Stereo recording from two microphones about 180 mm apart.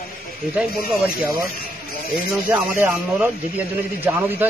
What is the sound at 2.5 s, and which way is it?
Speech, 10° right (ahead or behind).